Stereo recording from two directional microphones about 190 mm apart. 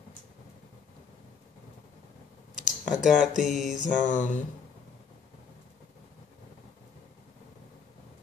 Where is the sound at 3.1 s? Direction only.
Centre (ahead or behind).